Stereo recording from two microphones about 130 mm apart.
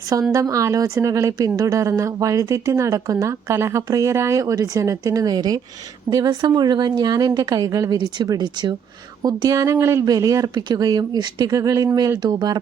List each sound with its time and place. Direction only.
0.1 s a woman's voice: 25° right (ahead or behind)